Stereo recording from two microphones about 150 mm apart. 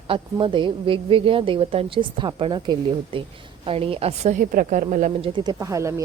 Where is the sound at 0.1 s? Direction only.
35° right (ahead or behind); by 5.1 s 55° right (ahead or behind).